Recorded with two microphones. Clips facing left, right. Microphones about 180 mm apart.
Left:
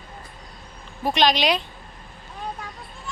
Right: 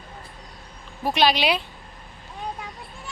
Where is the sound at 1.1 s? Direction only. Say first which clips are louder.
Left 1 dB; 10° right (ahead or behind).